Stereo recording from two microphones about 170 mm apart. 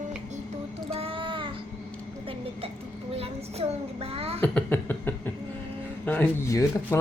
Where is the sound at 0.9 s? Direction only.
35° right (ahead or behind).